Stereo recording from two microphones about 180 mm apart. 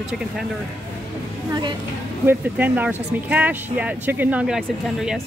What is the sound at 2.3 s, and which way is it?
Speech, 10° right (ahead or behind).